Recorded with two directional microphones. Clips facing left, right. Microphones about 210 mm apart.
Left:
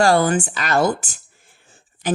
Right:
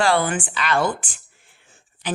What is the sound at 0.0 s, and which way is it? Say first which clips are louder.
Speech: left 4 dB; 40° left (ahead or behind).